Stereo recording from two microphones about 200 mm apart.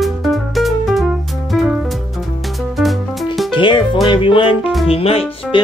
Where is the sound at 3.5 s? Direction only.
25° left (ahead or behind).